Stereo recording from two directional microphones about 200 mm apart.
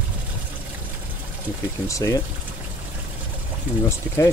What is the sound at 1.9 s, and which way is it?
Speech, 15° left (ahead or behind).